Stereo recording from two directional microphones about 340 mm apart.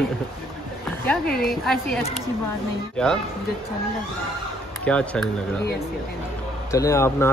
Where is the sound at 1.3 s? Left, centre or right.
Left.